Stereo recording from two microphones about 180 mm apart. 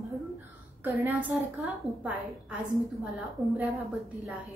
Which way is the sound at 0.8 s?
10° right (ahead or behind).